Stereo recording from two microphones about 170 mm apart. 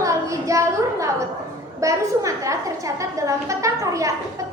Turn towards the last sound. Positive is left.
turn(degrees=-20)  # may be behind; listen again after turning